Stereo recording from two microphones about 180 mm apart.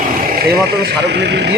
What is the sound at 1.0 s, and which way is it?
Speech, 70° right (ahead or behind).